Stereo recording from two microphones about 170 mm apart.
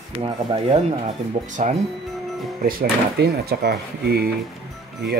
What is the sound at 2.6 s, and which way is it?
Speech, 65° right (ahead or behind).